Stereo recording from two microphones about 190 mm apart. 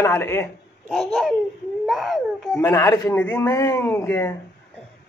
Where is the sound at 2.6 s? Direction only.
15° left (ahead or behind).